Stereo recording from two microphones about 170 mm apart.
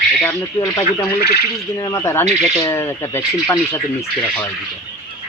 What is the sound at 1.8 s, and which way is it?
A man's voice, 15° left (ahead or behind).